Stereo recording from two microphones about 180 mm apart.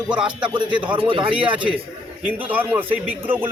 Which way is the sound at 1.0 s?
30° right (ahead or behind).